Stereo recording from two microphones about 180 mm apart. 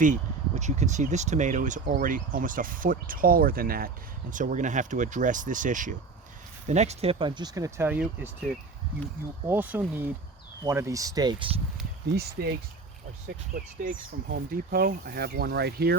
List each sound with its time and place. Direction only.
0.0 s speech: 40° right (ahead or behind); by 8.3 s 10° right (ahead or behind)
9.5 s speech: 10° right (ahead or behind); by 11.6 s 25° right (ahead or behind)
12.1 s speech: 60° right (ahead or behind)